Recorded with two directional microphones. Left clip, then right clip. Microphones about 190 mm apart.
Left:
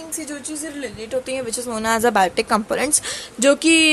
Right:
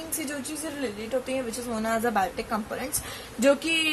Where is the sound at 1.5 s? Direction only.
55° left (ahead or behind).